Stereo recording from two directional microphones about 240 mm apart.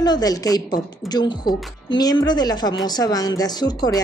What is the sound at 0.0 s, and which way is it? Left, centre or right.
Speech, centre.